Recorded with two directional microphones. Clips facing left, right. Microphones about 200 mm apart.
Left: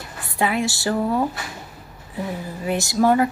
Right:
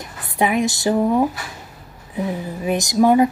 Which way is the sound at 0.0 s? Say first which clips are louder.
Right 3 dB; 20° right (ahead or behind).